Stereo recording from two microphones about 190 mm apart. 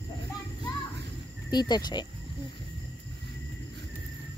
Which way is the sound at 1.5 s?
20° left (ahead or behind).